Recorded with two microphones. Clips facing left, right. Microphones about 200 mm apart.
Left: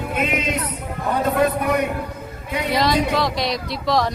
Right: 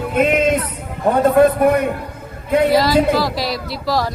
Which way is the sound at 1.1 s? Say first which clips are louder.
Right 7 dB; 50° right (ahead or behind).